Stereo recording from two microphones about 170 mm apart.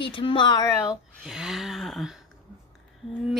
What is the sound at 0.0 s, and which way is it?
Speech, 30° left (ahead or behind).